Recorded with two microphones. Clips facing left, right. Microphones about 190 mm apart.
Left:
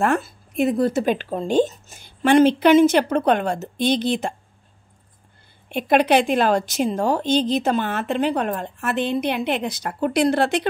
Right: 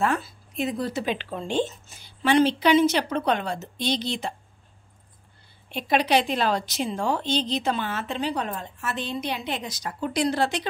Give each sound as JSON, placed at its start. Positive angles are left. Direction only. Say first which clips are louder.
{"t": 0.0, "sound": "speech", "louder": "left 4 dB", "side_deg": 55}
{"t": 5.7, "sound": "a woman's voice", "louder": "left 5 dB", "side_deg": 55}